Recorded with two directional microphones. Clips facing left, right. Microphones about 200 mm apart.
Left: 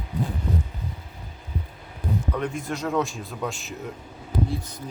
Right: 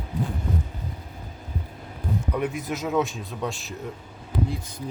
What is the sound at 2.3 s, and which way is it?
Speech, 5° right (ahead or behind).